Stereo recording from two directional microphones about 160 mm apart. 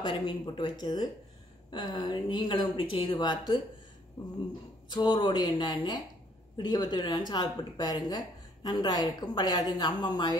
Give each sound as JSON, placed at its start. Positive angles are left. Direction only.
{"t": 0.0, "sound": "speech", "side_deg": 30}